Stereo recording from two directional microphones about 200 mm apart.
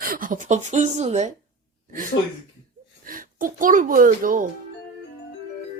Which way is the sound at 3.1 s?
45° right (ahead or behind).